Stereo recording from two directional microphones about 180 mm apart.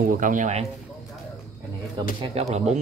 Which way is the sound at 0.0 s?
50° right (ahead or behind).